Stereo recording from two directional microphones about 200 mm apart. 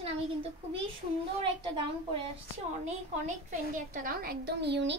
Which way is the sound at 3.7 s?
40° right (ahead or behind).